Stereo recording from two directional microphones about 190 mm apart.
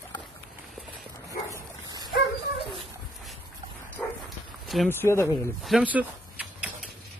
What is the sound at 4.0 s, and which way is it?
Dog, 10° left (ahead or behind).